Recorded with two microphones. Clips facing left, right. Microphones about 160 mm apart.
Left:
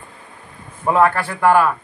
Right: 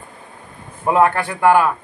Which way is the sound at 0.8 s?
20° right (ahead or behind).